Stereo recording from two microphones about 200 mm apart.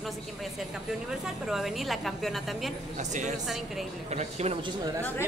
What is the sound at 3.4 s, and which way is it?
Speech, centre (ahead or behind).